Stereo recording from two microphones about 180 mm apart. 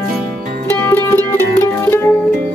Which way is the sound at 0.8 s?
15° left (ahead or behind).